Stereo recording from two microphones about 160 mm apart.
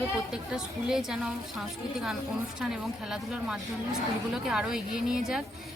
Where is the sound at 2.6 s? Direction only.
Centre (ahead or behind).